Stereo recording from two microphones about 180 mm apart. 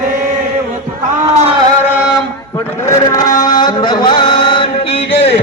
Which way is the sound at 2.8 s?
20° left (ahead or behind).